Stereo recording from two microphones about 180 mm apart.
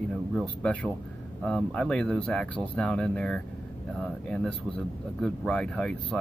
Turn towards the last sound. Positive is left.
turn(degrees=5)  # may be behind; listen again after turning